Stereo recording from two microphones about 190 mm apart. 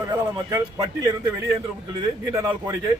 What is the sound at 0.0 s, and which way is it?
Speech, 15° right (ahead or behind).